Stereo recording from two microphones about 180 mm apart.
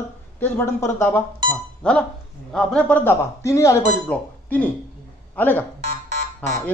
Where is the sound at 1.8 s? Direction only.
5° left (ahead or behind).